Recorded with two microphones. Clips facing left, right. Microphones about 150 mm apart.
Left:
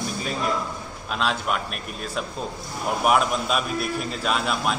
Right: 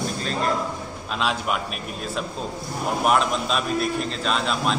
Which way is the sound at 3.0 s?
5° left (ahead or behind).